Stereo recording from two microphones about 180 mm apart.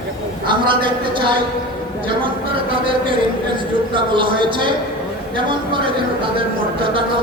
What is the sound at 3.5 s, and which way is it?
A man's voice, 25° right (ahead or behind).